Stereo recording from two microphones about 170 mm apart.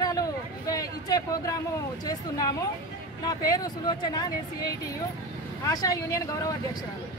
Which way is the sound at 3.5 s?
25° left (ahead or behind).